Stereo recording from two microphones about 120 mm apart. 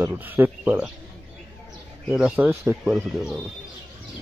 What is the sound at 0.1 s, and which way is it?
Speech, 15° right (ahead or behind).